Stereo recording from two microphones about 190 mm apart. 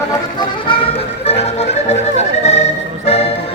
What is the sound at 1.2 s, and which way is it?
Music, 35° left (ahead or behind).